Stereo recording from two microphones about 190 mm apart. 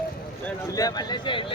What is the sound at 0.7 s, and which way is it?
Speech, 20° left (ahead or behind).